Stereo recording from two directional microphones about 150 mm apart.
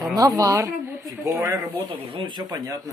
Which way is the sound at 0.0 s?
20° right (ahead or behind).